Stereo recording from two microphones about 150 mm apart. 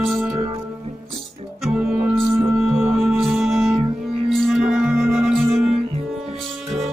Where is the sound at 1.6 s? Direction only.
5° right (ahead or behind).